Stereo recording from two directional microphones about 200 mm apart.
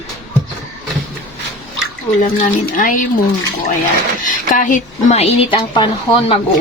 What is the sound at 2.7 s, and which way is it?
Speech, 40° left (ahead or behind).